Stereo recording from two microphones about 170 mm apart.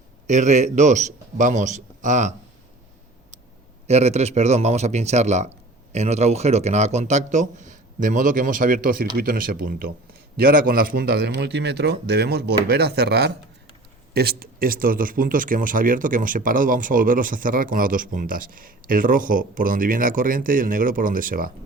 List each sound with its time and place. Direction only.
0.3 s speech: 45° right (ahead or behind)
3.8 s a man's voice: 40° right (ahead or behind); by 21.5 s 55° right (ahead or behind)